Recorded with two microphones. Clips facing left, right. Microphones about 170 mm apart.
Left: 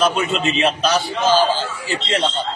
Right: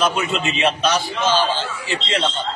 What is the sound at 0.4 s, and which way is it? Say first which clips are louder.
A man's voice: left 1 dB; 35° left (ahead or behind).